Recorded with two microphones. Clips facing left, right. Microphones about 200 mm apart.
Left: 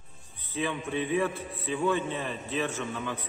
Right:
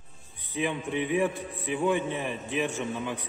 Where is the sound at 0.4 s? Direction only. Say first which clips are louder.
Right 2 dB; 15° right (ahead or behind).